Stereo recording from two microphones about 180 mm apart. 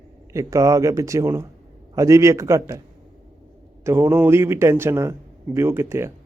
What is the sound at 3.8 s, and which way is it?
A man's voice, 15° right (ahead or behind).